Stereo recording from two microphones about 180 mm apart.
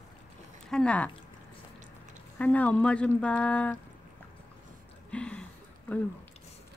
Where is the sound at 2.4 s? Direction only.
10° left (ahead or behind).